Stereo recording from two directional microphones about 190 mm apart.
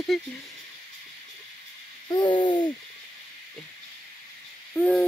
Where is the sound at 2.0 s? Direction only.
20° left (ahead or behind).